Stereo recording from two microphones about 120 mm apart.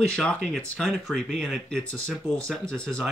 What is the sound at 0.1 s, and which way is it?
Speech, 5° left (ahead or behind).